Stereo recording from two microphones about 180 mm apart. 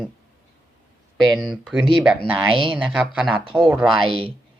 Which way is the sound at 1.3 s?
5° right (ahead or behind).